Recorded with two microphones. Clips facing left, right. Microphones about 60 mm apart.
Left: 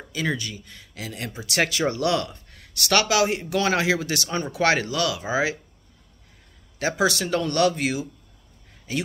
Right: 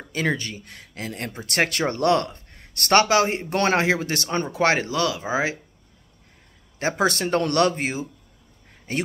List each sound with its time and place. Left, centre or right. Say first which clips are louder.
0.1 s speech: right 2 dB; right
6.8 s speech: right 1 dB; right
7.4 s speech: even; right
7.7 s speech: left 1 dB; right
8.9 s speech: right 1 dB; right